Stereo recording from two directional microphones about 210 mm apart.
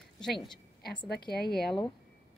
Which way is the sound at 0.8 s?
50° left (ahead or behind).